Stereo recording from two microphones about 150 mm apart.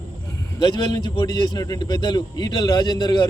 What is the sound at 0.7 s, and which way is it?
A man's voice, 30° left (ahead or behind).